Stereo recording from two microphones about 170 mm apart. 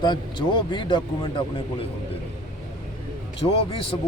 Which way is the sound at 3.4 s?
35° left (ahead or behind).